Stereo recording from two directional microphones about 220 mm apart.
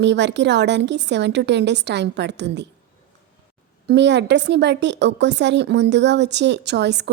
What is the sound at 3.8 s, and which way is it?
A woman's voice, 50° right (ahead or behind).